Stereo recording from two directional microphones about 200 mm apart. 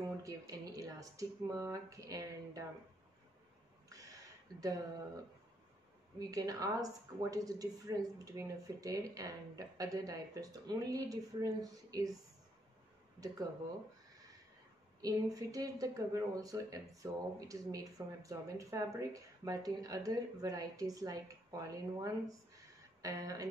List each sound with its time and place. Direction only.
0.0 s speech: 15° right (ahead or behind)
4.6 s speech: 15° right (ahead or behind)
6.1 s speech: 20° right (ahead or behind)
13.2 s speech: 20° right (ahead or behind)
15.0 s speech: 20° right (ahead or behind)